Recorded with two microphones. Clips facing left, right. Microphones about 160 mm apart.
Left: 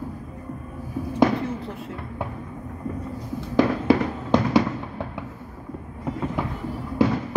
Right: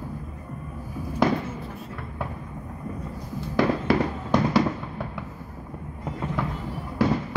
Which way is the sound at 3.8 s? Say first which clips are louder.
Left 3 dB; 20° left (ahead or behind).